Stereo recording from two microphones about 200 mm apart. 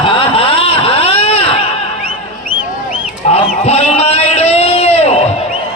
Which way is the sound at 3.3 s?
30° left (ahead or behind).